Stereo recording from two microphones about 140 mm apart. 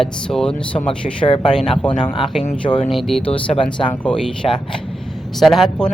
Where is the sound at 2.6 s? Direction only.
45° left (ahead or behind).